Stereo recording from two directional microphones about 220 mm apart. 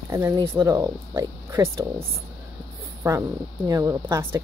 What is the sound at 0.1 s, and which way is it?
Speech, 15° right (ahead or behind).